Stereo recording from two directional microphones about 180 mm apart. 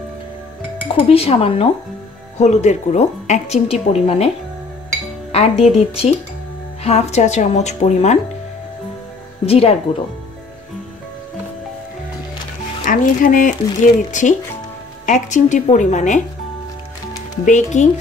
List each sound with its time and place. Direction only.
0.8 s speech: 30° left (ahead or behind)
5.3 s speech: 35° left (ahead or behind)
9.5 s speech: 35° left (ahead or behind)
12.8 s a woman's voice: 50° left (ahead or behind)
15.0 s a woman's voice: 45° left (ahead or behind)
17.5 s speech: 40° left (ahead or behind)